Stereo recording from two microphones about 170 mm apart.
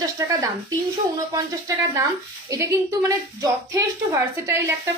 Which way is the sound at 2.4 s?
20° right (ahead or behind).